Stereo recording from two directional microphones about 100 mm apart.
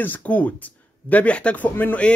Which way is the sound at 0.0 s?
15° left (ahead or behind).